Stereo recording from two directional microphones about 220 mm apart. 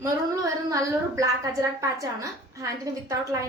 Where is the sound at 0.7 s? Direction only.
15° right (ahead or behind).